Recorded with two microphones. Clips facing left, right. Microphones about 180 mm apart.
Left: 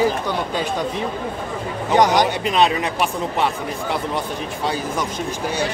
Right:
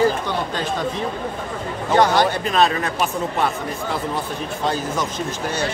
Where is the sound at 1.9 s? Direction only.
15° left (ahead or behind).